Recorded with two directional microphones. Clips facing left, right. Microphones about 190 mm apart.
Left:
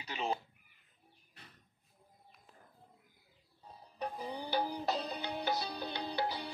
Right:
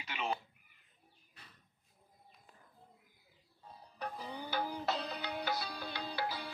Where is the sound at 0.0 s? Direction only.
35° left (ahead or behind).